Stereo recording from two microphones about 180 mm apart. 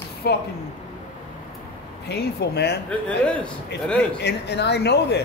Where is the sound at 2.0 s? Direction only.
65° left (ahead or behind).